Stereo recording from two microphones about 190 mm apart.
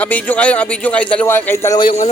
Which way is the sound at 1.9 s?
40° left (ahead or behind).